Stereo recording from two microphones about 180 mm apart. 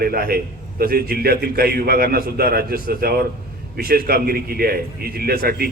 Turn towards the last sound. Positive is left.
turn(degrees=-60)  # may be behind; listen again after turning